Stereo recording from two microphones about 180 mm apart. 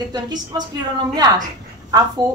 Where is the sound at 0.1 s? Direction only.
25° right (ahead or behind).